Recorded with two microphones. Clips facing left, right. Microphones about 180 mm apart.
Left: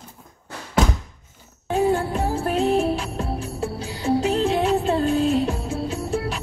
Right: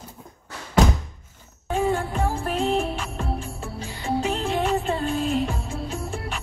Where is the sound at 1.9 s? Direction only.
35° left (ahead or behind).